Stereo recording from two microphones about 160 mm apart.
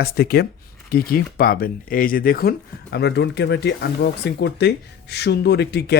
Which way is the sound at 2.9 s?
90° left.